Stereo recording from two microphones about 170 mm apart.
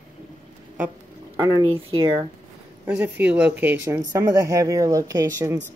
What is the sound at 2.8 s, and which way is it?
Speech, 10° right (ahead or behind).